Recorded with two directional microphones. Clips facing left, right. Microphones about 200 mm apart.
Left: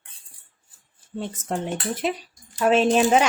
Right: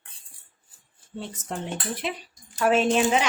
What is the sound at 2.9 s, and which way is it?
Speech, 45° left (ahead or behind).